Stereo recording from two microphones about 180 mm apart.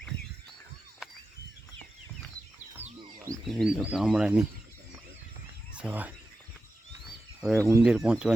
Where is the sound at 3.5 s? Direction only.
Centre (ahead or behind).